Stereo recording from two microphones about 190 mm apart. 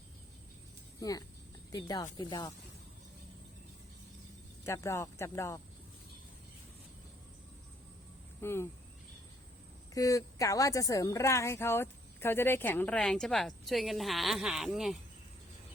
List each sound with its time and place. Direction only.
0.9 s speech: 20° left (ahead or behind)
4.6 s a woman's voice: 15° left (ahead or behind)
8.4 s speech: 15° left (ahead or behind)
9.9 s a woman's voice: 15° left (ahead or behind); by 14.9 s centre (ahead or behind)